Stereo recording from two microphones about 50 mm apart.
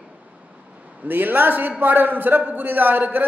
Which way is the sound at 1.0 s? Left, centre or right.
Right.